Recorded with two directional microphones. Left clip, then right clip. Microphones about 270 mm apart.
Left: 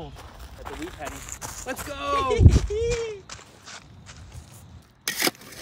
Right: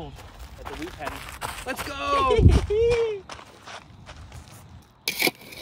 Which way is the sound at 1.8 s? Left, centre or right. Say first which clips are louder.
Right 2 dB; centre.